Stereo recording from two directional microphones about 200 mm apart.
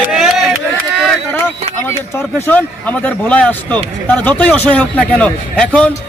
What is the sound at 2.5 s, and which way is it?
A man's voice, 5° left (ahead or behind).